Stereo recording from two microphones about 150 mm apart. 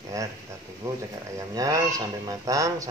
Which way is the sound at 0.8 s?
20° right (ahead or behind).